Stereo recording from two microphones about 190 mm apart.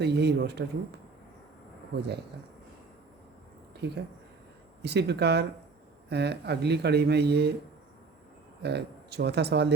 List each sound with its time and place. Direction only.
0.0 s speech: 60° right (ahead or behind)
2.0 s speech: 60° right (ahead or behind)
3.8 s speech: 60° right (ahead or behind)
8.6 s speech: 60° right (ahead or behind)